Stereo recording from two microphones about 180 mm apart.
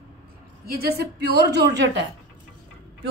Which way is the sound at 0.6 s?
60° right (ahead or behind).